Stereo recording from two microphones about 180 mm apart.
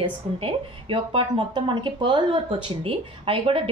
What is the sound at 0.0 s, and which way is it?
A woman's voice, 30° right (ahead or behind).